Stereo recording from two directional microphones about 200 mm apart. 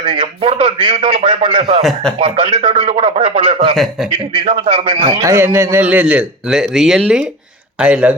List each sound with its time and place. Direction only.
0.0 s a man's voice: 25° right (ahead or behind)
1.8 s speech: centre (ahead or behind)
2.1 s a man's voice: 30° right (ahead or behind); by 8.1 s 5° right (ahead or behind)